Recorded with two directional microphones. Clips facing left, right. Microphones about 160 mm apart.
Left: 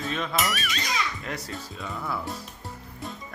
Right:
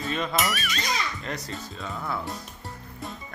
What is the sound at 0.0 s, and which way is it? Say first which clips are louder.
Speech: right 1 dB; centre (ahead or behind).